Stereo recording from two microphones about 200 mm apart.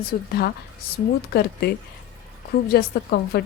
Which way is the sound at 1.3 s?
55° left (ahead or behind).